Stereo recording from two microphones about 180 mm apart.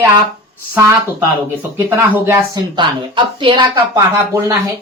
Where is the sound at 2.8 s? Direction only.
30° right (ahead or behind).